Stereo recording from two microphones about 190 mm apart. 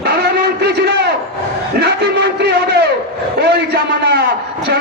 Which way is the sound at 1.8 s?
60° right (ahead or behind).